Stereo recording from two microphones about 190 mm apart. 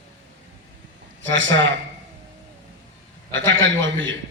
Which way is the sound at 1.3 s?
75° right (ahead or behind).